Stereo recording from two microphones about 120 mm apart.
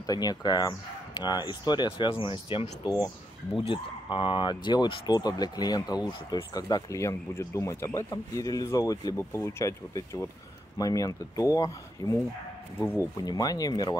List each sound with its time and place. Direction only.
0.0 s speech: 35° left (ahead or behind)
2.8 s speech: 30° left (ahead or behind)
3.5 s speech: 45° left (ahead or behind)
12.7 s speech: 20° left (ahead or behind)
13.2 s speech: 30° left (ahead or behind)